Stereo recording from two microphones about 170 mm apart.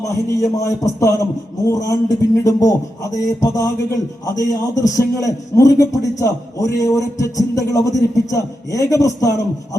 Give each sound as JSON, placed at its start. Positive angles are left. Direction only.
{"t": 0.1, "sound": "a man's voice", "side_deg": 20}